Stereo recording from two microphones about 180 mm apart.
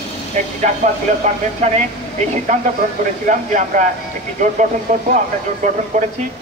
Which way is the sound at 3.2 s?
45° right (ahead or behind).